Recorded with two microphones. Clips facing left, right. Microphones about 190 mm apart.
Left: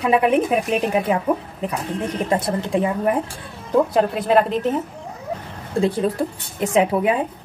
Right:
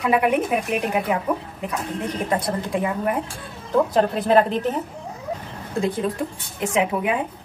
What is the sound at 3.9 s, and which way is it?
Speech, 5° left (ahead or behind).